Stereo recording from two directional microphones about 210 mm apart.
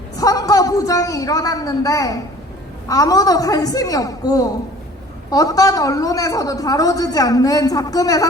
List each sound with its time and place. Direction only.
0.2 s a woman's voice: 15° left (ahead or behind)